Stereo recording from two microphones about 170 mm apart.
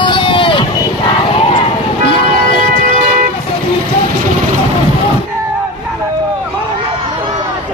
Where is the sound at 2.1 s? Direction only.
30° left (ahead or behind).